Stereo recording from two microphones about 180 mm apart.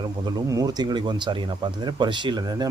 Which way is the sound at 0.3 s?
20° right (ahead or behind).